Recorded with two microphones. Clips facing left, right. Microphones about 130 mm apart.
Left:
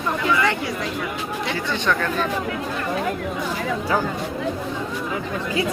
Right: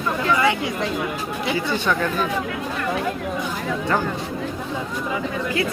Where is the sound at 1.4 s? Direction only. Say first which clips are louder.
Right 2 dB; 10° right (ahead or behind).